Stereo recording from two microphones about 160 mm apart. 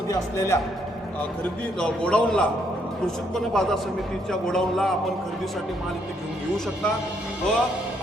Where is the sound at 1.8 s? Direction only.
5° left (ahead or behind).